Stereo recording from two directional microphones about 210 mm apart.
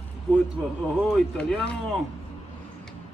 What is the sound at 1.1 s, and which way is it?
Speech, 5° left (ahead or behind).